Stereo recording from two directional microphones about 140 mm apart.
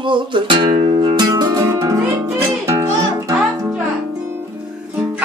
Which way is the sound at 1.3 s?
25° right (ahead or behind).